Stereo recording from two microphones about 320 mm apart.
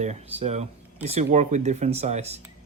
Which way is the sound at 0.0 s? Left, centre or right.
Right.